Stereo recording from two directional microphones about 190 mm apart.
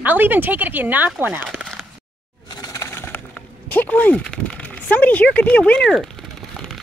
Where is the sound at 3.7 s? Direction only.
10° left (ahead or behind).